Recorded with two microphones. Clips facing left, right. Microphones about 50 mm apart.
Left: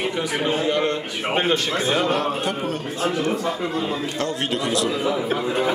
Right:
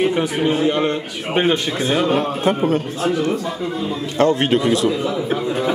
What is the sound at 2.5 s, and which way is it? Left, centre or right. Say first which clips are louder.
Speech: right 8 dB; right.